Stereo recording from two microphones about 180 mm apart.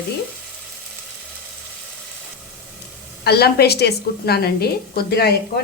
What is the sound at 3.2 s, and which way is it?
A woman's voice, 60° left (ahead or behind).